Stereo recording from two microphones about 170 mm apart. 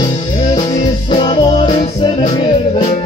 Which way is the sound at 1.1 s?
30° left (ahead or behind).